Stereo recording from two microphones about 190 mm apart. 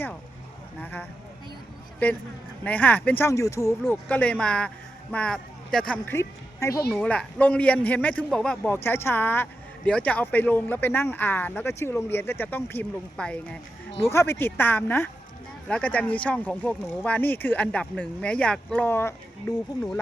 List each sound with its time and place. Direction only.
0.8 s a man's voice: 10° left (ahead or behind)
6.9 s a man's voice: 5° left (ahead or behind)